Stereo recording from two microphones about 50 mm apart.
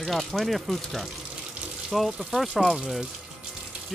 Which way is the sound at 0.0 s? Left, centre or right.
Centre.